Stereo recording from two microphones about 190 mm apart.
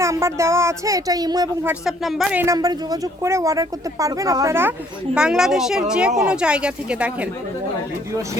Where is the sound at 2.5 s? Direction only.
20° right (ahead or behind).